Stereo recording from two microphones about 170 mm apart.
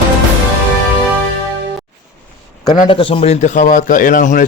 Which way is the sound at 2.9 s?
30° left (ahead or behind).